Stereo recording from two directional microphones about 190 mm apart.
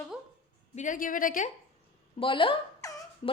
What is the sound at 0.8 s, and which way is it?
Speech, 45° left (ahead or behind).